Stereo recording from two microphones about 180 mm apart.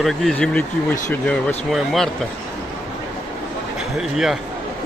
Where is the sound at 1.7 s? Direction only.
Centre (ahead or behind).